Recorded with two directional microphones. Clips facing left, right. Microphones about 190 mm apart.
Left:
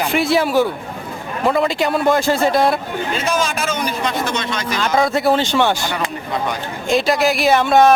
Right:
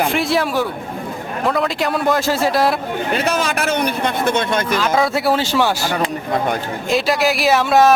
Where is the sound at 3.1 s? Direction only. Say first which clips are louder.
Right 1 dB; 65° right (ahead or behind).